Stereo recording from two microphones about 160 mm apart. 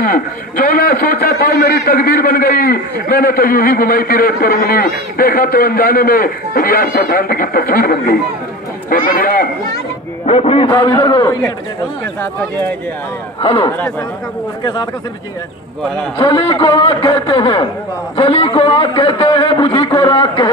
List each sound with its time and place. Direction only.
0.0 s a man's voice: 65° left (ahead or behind)
10.2 s a man's voice: 40° left (ahead or behind)
10.7 s a man's voice: 25° left (ahead or behind)
13.4 s a man's voice: 25° left (ahead or behind)
16.2 s a man's voice: 30° left (ahead or behind)